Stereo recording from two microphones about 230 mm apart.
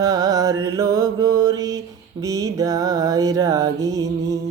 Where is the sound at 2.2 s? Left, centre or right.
Centre.